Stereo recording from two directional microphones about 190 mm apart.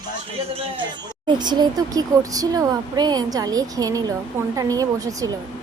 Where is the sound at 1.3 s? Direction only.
25° right (ahead or behind).